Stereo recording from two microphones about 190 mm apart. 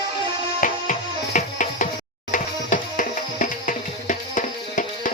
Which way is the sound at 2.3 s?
45° left (ahead or behind).